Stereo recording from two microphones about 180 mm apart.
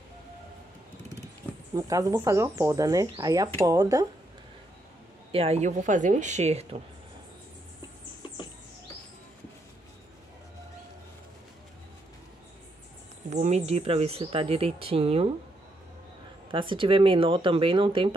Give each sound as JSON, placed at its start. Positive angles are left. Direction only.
{"t": 1.8, "sound": "speech", "side_deg": -20}
{"t": 5.3, "sound": "speech", "side_deg": -35}
{"t": 13.3, "sound": "speech", "side_deg": -40}
{"t": 16.5, "sound": "speech", "side_deg": -30}